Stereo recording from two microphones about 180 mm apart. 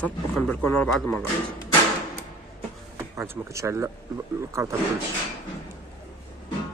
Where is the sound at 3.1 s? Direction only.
15° right (ahead or behind).